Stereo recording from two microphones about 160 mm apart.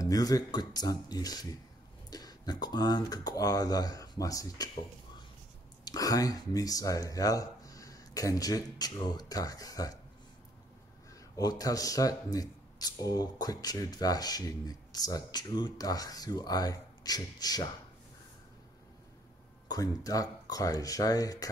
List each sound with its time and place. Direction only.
0.0 s speech: 25° left (ahead or behind)
5.9 s speech: 20° left (ahead or behind)
11.3 s speech: 25° left (ahead or behind)
19.7 s speech: 20° left (ahead or behind)